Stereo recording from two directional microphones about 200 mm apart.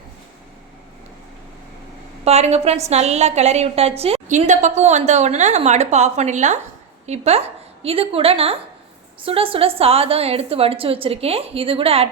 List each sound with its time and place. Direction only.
2.2 s a woman's voice: 30° right (ahead or behind)